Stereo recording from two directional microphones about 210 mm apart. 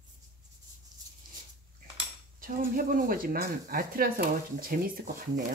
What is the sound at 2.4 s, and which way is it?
Speech, 40° right (ahead or behind).